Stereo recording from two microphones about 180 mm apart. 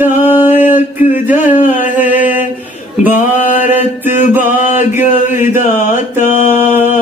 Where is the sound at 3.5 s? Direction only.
10° right (ahead or behind).